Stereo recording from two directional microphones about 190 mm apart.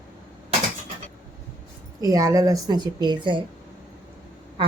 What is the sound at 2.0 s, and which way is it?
A woman's voice, 15° right (ahead or behind).